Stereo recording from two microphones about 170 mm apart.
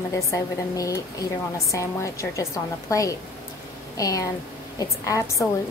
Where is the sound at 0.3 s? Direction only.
20° left (ahead or behind).